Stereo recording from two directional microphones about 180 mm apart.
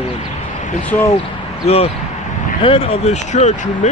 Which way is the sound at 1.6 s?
35° left (ahead or behind).